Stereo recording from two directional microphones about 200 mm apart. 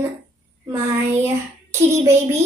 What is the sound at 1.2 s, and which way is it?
Speech, 15° right (ahead or behind).